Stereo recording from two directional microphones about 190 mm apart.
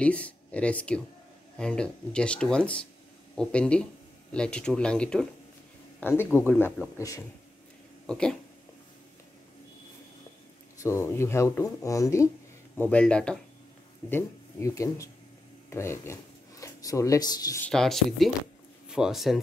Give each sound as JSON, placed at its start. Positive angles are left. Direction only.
{"t": 0.0, "sound": "speech", "side_deg": 5}
{"t": 8.1, "sound": "speech", "side_deg": 5}
{"t": 10.8, "sound": "speech", "side_deg": 15}
{"t": 17.6, "sound": "speech", "side_deg": 0}